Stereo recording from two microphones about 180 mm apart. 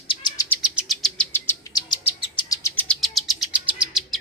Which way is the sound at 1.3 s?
25° left (ahead or behind).